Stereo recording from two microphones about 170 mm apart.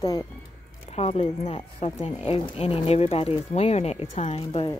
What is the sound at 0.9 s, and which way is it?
Speech, 40° left (ahead or behind).